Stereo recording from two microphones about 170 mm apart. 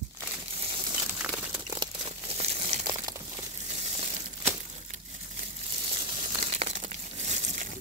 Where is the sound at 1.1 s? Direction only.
5° right (ahead or behind).